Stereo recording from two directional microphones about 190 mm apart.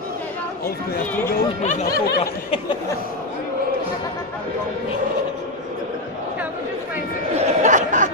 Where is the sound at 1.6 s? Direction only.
35° left (ahead or behind).